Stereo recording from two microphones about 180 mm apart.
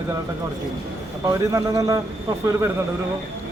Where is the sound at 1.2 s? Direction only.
20° right (ahead or behind).